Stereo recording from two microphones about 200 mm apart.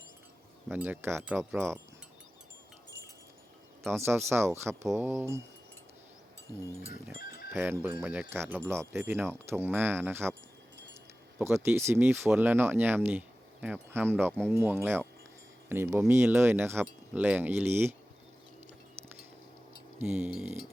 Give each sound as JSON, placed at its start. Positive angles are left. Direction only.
{"t": 0.7, "sound": "speech", "side_deg": -10}
{"t": 3.9, "sound": "speech", "side_deg": -10}
{"t": 7.2, "sound": "livestock", "side_deg": 50}
{"t": 7.5, "sound": "speech", "side_deg": -10}
{"t": 11.3, "sound": "speech", "side_deg": -15}
{"t": 20.0, "sound": "speech", "side_deg": -10}